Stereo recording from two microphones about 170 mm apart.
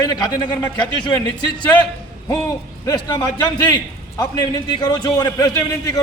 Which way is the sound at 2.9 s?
20° left (ahead or behind).